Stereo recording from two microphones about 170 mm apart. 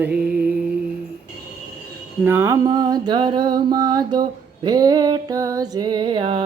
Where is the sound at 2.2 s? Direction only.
10° right (ahead or behind).